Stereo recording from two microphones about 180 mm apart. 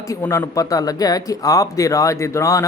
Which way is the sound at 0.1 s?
15° left (ahead or behind).